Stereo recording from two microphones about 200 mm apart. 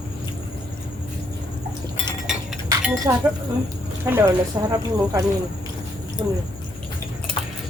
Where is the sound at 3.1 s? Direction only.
15° right (ahead or behind).